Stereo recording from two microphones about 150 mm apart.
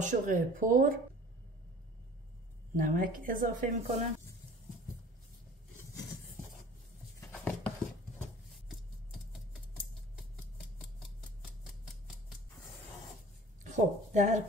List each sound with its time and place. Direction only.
0.0 s a woman's voice: 60° right (ahead or behind)
2.7 s a woman's voice: 65° right (ahead or behind)
7.2 s a sound: 10° left (ahead or behind)
13.7 s a woman's voice: 55° right (ahead or behind)